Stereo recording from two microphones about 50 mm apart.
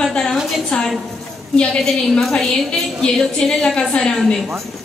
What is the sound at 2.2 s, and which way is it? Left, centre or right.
A woman's voice, centre.